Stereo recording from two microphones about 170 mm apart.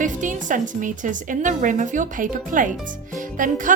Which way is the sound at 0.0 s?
50° right (ahead or behind).